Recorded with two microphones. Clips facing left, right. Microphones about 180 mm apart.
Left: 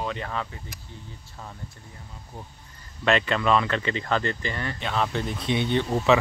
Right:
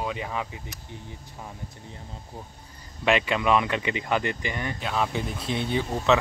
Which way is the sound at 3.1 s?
10° right (ahead or behind).